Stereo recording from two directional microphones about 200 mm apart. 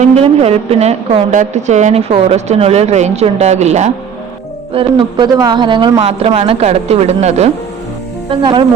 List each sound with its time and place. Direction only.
0.0 s a woman's voice: 30° right (ahead or behind)